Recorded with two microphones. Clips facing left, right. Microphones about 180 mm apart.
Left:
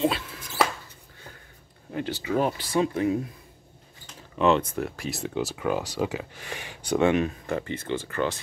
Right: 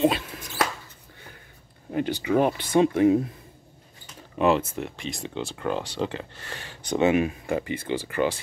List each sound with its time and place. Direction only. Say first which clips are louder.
1.9 s speech: right 4 dB; 15° right (ahead or behind)
4.4 s speech: even; 5° right (ahead or behind); by 7.0 s 10° left (ahead or behind)
7.0 s speech: right 1 dB; 5° right (ahead or behind)